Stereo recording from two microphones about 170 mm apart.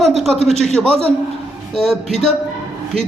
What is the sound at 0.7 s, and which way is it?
A man's voice, 35° right (ahead or behind).